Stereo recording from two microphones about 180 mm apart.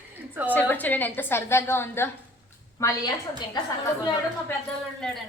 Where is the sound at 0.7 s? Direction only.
10° left (ahead or behind).